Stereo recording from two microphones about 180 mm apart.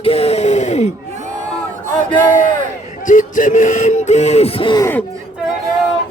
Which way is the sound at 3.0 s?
45° left (ahead or behind).